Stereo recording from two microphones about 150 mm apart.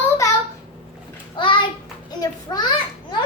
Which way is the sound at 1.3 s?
35° left (ahead or behind).